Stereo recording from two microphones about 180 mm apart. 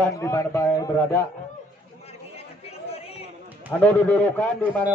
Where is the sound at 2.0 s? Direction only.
35° left (ahead or behind).